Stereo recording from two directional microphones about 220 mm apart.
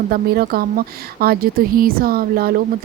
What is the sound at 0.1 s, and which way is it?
Speech, 45° right (ahead or behind).